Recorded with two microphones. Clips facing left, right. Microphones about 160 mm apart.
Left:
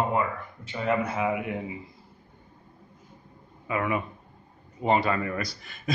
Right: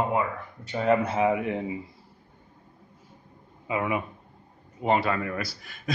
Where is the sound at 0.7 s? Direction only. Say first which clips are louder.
Right 4 dB; 35° right (ahead or behind).